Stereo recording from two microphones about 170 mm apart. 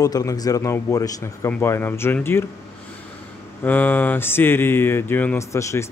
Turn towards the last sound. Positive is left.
turn(degrees=15)  # may be behind; listen again after turning